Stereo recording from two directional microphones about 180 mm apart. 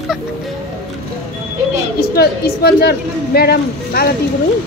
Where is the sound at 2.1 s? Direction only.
60° left (ahead or behind).